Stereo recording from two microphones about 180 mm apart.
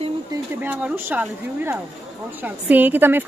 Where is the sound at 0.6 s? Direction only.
10° right (ahead or behind).